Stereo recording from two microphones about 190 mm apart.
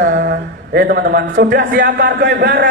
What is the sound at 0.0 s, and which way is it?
A man's voice, 50° right (ahead or behind).